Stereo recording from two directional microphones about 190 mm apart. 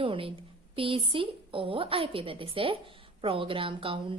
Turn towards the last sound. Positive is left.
turn(degrees=-30)  # may be behind; listen again after turning